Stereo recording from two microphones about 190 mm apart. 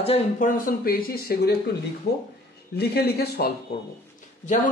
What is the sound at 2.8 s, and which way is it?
Speech, 55° left (ahead or behind).